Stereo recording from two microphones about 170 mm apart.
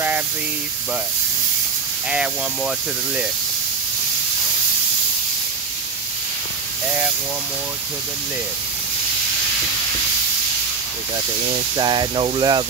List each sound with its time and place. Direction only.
2.0 s speech: 5° right (ahead or behind)
11.7 s speech: 25° right (ahead or behind)